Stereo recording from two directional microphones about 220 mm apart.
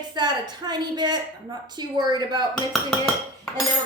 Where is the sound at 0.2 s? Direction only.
20° right (ahead or behind).